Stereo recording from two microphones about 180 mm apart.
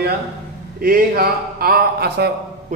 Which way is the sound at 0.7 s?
55° right (ahead or behind).